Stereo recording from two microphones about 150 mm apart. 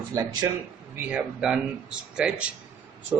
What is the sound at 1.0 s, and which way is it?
Speech, 5° right (ahead or behind).